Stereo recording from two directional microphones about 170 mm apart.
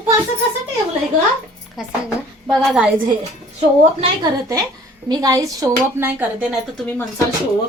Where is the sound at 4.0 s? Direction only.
25° right (ahead or behind).